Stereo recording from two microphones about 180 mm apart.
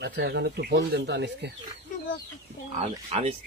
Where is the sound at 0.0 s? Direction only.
70° right (ahead or behind).